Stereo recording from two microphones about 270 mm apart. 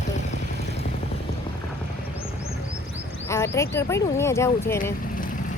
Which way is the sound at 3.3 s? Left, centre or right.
Centre.